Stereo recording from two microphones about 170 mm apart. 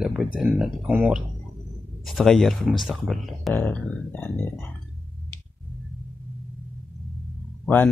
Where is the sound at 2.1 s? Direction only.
Centre (ahead or behind).